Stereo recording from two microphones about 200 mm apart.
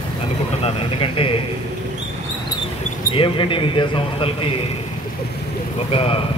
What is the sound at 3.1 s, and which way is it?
Speech, 25° left (ahead or behind).